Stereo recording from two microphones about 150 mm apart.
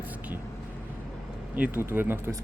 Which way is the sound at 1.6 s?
15° right (ahead or behind).